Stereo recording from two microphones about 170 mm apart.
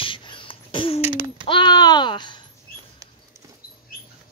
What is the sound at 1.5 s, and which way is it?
Speech, 25° left (ahead or behind).